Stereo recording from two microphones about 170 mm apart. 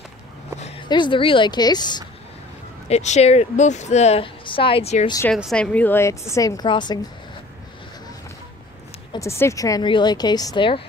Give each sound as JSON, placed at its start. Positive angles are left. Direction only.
{"t": 0.6, "sound": "a sound", "side_deg": 40}
{"t": 0.8, "sound": "speech", "side_deg": 25}
{"t": 2.9, "sound": "a woman's voice", "side_deg": 40}
{"t": 5.3, "sound": "a woman's voice", "side_deg": 5}
{"t": 9.1, "sound": "speech", "side_deg": 15}